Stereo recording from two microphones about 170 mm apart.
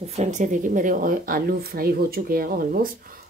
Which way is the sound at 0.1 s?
45° right (ahead or behind).